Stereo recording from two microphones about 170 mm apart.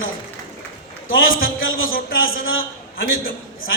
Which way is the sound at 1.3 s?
60° left (ahead or behind).